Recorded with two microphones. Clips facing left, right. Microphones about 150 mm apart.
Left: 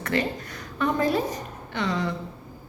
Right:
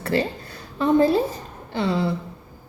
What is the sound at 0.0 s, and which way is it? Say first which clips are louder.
A woman's voice: right 3 dB; 30° right (ahead or behind).